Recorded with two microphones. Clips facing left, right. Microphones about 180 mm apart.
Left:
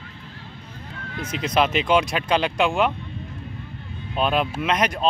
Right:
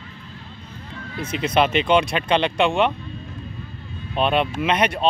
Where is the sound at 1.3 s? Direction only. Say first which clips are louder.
Right 2 dB; centre (ahead or behind).